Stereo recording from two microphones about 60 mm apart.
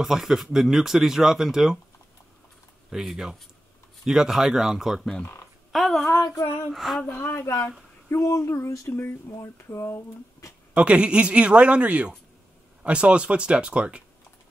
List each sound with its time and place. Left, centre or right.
0.0 s speech: centre
2.9 s speech: centre
6.2 s female singing: left
6.7 s speech: centre
7.1 s speech: left
8.1 s speech: left
10.7 s speech: right